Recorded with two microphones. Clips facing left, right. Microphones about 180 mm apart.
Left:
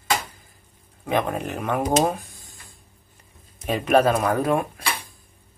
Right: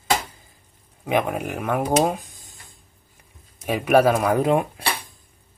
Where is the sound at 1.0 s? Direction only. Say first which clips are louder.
Right 1 dB; 15° right (ahead or behind).